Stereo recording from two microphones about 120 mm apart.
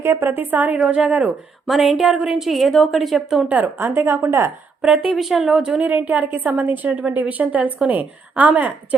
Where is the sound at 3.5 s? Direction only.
15° right (ahead or behind).